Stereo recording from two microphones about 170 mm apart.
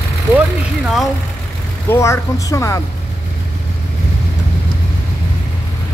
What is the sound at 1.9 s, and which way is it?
Speech, 15° left (ahead or behind).